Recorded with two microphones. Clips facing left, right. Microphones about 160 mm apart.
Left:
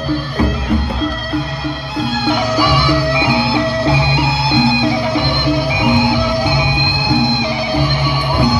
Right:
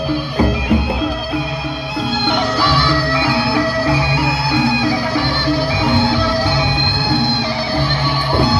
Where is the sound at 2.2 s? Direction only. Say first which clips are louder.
Left 3 dB; 10° left (ahead or behind).